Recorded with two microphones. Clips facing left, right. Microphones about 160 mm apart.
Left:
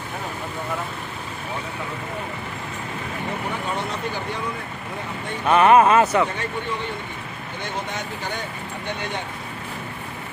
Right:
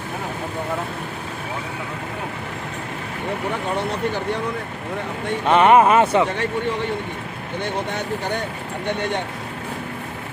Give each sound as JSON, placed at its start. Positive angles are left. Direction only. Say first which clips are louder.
{"t": 5.5, "sound": "speech", "louder": "right 1 dB", "side_deg": -20}